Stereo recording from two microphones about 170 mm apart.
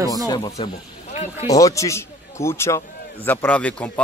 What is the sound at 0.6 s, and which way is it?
Speech, 30° left (ahead or behind).